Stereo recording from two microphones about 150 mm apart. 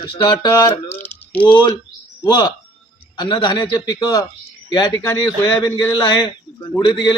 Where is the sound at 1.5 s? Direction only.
30° left (ahead or behind).